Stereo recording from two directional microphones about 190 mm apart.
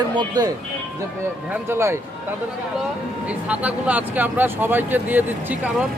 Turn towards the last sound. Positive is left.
turn(degrees=-10)  # may be behind; listen again after turning